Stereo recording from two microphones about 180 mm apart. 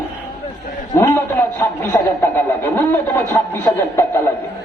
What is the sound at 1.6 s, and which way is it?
Speech, 15° left (ahead or behind).